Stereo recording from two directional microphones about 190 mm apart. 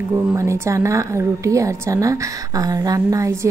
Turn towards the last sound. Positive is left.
turn(degrees=-15)  # may be behind; listen again after turning